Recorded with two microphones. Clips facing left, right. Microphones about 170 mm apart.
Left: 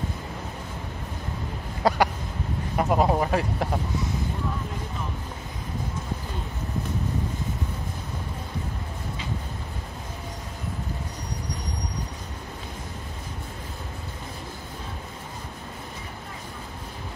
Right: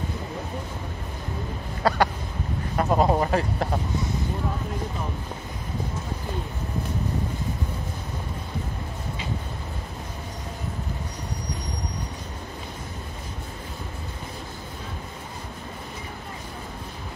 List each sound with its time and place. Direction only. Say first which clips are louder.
1.8 s speech: even; 15° left (ahead or behind)